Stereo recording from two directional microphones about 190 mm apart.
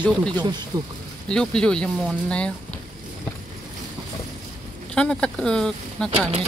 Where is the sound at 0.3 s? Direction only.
20° right (ahead or behind).